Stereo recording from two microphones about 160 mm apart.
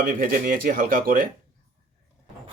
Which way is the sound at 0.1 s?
60° right (ahead or behind).